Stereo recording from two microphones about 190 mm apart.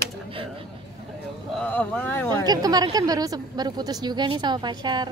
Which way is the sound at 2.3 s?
20° right (ahead or behind).